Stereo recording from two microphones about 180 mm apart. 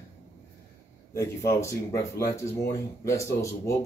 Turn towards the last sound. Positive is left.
turn(degrees=15)  # may be behind; listen again after turning